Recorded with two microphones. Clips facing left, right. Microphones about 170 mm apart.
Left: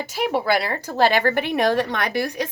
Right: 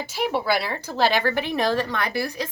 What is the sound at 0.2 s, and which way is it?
A woman's voice, 50° left (ahead or behind).